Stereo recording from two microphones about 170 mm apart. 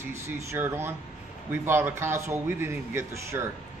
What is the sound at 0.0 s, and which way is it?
A man's voice, 15° right (ahead or behind).